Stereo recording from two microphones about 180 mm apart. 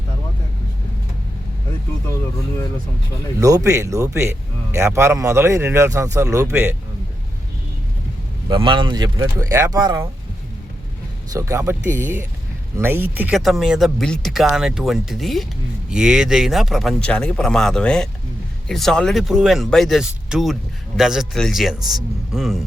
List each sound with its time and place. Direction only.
3.4 s a man's voice: 15° right (ahead or behind)
8.4 s speech: 25° right (ahead or behind)
11.3 s a man's voice: 15° right (ahead or behind); by 22.6 s centre (ahead or behind)